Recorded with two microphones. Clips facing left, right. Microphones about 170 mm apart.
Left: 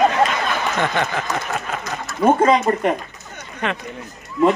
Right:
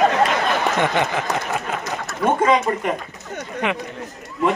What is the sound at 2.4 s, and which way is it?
Speech, 35° left (ahead or behind).